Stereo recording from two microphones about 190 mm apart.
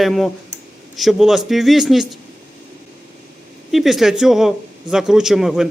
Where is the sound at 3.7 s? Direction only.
Centre (ahead or behind).